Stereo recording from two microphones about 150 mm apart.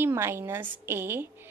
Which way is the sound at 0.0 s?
15° right (ahead or behind).